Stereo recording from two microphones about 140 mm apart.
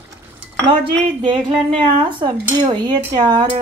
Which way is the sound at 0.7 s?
35° right (ahead or behind).